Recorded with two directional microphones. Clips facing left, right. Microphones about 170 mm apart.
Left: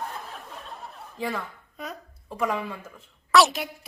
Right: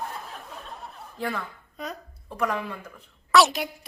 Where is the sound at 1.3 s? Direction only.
5° left (ahead or behind).